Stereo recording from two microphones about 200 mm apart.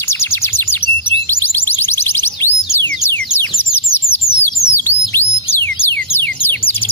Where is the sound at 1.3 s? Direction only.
10° left (ahead or behind).